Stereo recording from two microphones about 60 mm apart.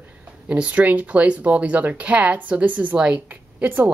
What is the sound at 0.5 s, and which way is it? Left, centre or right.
A woman's voice, right.